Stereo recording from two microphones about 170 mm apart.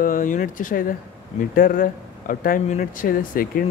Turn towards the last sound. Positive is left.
turn(degrees=55)  # may be behind; listen again after turning